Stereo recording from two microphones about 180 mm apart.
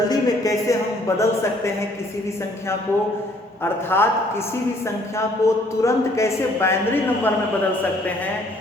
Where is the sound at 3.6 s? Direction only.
10° left (ahead or behind).